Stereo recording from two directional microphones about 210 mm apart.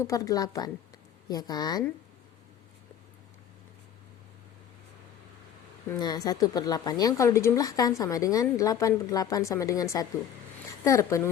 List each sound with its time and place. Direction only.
0.0 s a woman's voice: 15° left (ahead or behind)
5.9 s a woman's voice: 20° left (ahead or behind)